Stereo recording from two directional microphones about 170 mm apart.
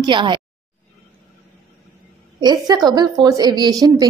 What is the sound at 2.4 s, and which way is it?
A woman's voice, 25° right (ahead or behind).